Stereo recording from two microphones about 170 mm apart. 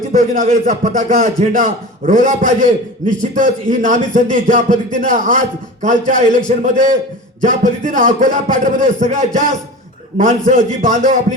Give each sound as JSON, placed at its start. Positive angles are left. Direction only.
{"t": 0.1, "sound": "speech", "side_deg": -55}